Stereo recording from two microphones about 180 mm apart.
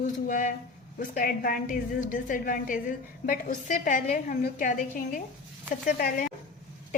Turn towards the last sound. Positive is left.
turn(degrees=55)  # may be behind; listen again after turning